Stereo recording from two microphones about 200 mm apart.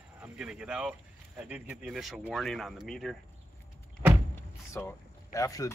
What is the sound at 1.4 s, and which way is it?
Speech, 5° right (ahead or behind).